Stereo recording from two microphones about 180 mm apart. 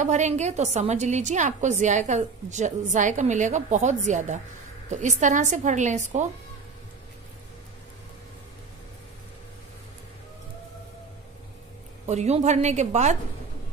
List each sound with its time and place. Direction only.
0.0 s a woman's voice: 40° right (ahead or behind)
12.1 s a woman's voice: 40° right (ahead or behind)